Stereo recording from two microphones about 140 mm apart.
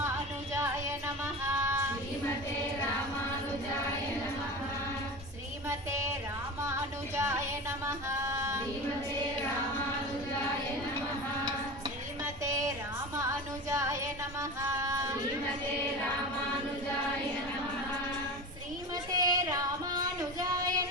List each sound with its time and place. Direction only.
1.6 s child singing: 20° right (ahead or behind)
7.2 s female singing: 20° right (ahead or behind)
12.5 s female singing: 20° right (ahead or behind)
14.6 s a sound: 20° right (ahead or behind)
19.1 s child singing: 25° right (ahead or behind)